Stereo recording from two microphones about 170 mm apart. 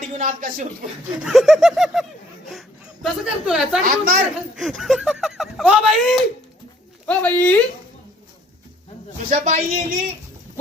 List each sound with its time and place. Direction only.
0.0 s speech: 45° right (ahead or behind)
1.2 s a sound: centre (ahead or behind)
2.5 s speech: centre (ahead or behind)
3.8 s a woman's voice: 60° right (ahead or behind)
4.5 s a sound: centre (ahead or behind)
7.1 s speech: 10° left (ahead or behind)
9.3 s speech: 45° right (ahead or behind)